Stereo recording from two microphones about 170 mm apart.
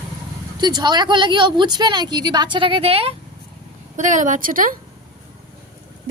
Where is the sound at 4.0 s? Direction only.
45° right (ahead or behind).